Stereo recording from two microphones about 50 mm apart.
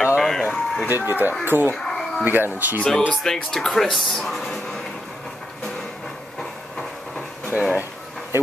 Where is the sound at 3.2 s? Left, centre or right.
Centre.